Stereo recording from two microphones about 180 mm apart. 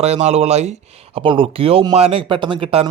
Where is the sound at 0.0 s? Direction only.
35° right (ahead or behind).